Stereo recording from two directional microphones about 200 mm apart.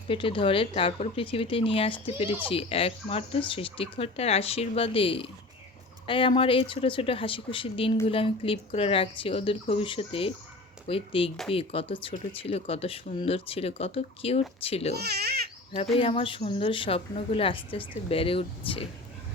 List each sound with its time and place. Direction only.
0.1 s speech: 25° left (ahead or behind)
14.9 s speech: 55° right (ahead or behind)
16.0 s speech: 25° left (ahead or behind)